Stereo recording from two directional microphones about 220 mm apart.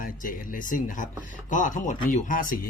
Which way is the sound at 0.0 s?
40° left (ahead or behind).